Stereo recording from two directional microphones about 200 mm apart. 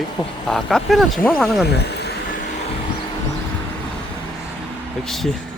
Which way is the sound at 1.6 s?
55° left (ahead or behind).